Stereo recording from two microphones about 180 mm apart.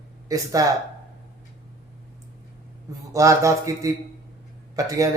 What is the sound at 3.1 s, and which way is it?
Speech, 15° right (ahead or behind).